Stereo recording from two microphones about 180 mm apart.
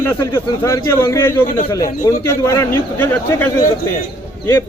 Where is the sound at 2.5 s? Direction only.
15° left (ahead or behind).